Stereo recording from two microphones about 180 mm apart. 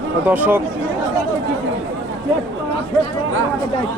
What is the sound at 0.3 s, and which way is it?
Speech, 10° right (ahead or behind).